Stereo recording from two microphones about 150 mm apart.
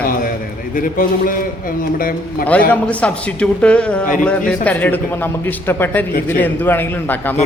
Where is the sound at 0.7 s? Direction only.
65° left (ahead or behind).